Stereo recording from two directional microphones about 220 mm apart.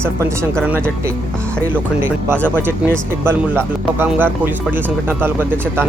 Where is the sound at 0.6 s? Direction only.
5° right (ahead or behind).